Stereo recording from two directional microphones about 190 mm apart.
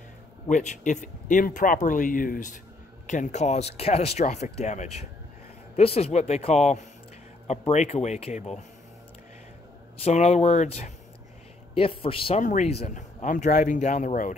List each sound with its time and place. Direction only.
0.5 s speech: 40° left (ahead or behind)
10.0 s a man's voice: 35° left (ahead or behind)